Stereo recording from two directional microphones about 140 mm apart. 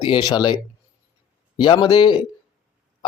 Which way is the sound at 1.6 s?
35° left (ahead or behind).